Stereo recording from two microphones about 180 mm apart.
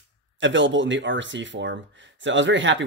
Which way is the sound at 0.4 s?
90° right.